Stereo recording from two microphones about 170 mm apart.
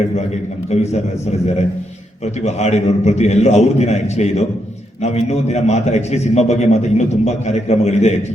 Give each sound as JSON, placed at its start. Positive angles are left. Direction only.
{"t": 0.7, "sound": "a man's voice", "side_deg": 40}
{"t": 2.2, "sound": "a man's voice", "side_deg": 40}